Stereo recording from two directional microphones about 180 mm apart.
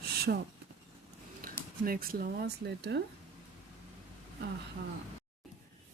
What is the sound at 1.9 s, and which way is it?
Speech, 55° right (ahead or behind).